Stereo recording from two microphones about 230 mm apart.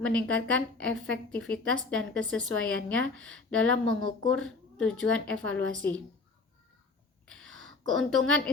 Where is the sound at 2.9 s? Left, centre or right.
Right.